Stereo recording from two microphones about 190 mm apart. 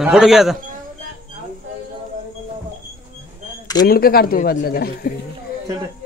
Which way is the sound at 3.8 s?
50° left (ahead or behind).